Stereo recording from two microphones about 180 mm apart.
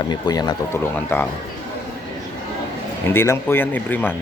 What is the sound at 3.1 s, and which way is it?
Speech, 15° left (ahead or behind).